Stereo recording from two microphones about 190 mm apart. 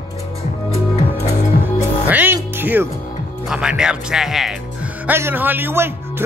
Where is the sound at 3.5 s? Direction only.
5° right (ahead or behind).